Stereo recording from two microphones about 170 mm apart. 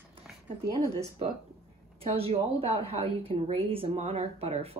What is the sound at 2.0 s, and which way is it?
Speech, 35° right (ahead or behind).